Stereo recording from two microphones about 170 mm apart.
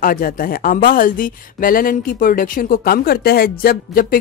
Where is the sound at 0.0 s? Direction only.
55° left (ahead or behind).